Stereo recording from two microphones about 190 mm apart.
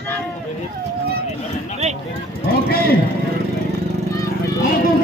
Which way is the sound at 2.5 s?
55° left (ahead or behind).